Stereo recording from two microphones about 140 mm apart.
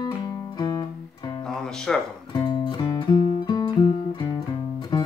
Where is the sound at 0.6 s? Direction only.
30° left (ahead or behind).